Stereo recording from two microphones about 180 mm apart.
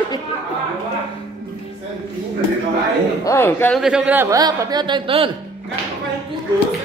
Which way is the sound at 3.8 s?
5° right (ahead or behind).